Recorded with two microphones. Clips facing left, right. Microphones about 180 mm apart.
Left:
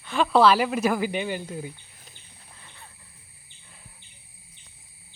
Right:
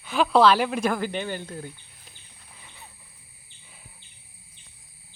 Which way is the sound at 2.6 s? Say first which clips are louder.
Right 2 dB; 5° right (ahead or behind).